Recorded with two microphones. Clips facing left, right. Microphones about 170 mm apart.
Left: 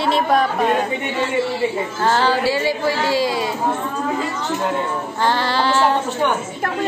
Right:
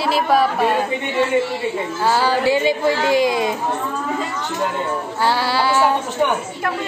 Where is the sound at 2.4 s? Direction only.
20° right (ahead or behind).